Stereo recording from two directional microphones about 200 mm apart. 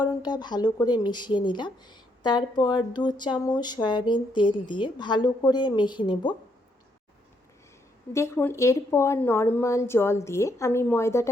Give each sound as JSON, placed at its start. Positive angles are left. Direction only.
{"t": 0.0, "sound": "speech", "side_deg": 20}
{"t": 8.1, "sound": "a woman's voice", "side_deg": 15}